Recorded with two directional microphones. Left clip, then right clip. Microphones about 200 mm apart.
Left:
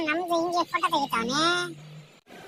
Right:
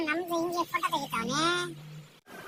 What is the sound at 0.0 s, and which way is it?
Speech, 15° left (ahead or behind).